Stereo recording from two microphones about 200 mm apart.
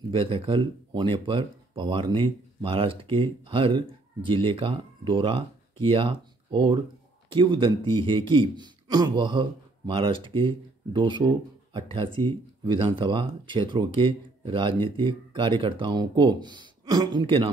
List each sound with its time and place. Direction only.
0.1 s speech: 25° right (ahead or behind)